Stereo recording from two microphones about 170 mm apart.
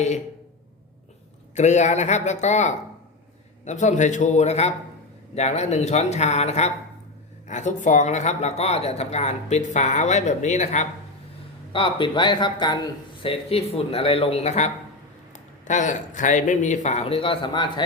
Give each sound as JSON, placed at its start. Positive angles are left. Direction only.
{"t": 1.5, "sound": "a woman's voice", "side_deg": 45}
{"t": 11.7, "sound": "a woman's voice", "side_deg": 30}